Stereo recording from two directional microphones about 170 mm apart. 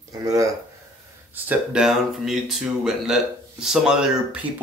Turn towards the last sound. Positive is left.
turn(degrees=-5)  # may be behind; listen again after turning